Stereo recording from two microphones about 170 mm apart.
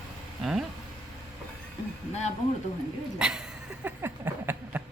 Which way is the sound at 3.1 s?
5° right (ahead or behind).